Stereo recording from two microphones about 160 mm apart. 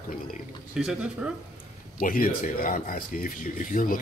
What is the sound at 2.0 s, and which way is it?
Speech, 65° left (ahead or behind).